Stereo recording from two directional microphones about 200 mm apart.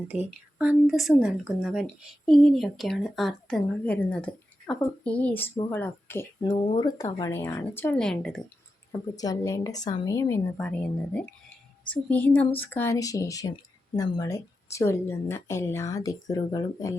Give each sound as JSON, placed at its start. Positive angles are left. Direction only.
{"t": 0.6, "sound": "speech", "side_deg": -5}
{"t": 9.1, "sound": "speech", "side_deg": 20}